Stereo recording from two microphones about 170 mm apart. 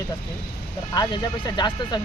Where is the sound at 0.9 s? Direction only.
25° left (ahead or behind).